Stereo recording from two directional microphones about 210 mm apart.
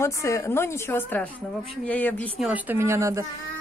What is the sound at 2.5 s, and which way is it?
Speech, 10° right (ahead or behind).